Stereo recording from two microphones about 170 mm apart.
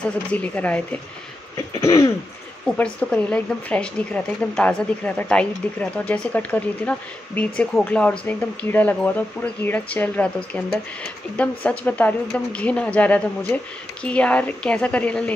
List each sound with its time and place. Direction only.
0.0 s speech: 10° left (ahead or behind)
1.7 s cough: 15° left (ahead or behind)
2.8 s speech: 5° left (ahead or behind)